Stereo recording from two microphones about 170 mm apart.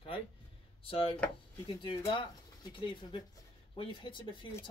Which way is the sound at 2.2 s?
30° left (ahead or behind).